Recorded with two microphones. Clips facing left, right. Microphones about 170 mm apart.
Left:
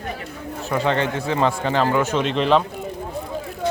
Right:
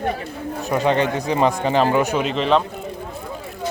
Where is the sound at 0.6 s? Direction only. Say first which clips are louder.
Right 2 dB; 15° right (ahead or behind).